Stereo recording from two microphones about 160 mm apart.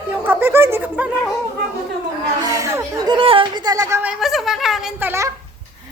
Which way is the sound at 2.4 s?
20° right (ahead or behind).